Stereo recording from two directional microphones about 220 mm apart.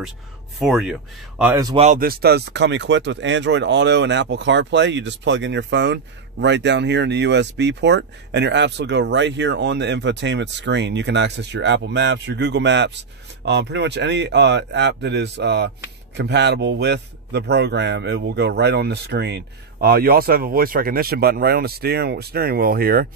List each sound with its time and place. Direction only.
0.6 s speech: 5° right (ahead or behind)
1.4 s speech: 15° right (ahead or behind)
1.8 s a man's voice: 35° right (ahead or behind)